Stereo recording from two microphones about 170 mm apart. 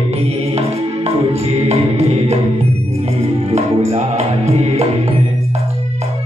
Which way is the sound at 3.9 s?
40° right (ahead or behind).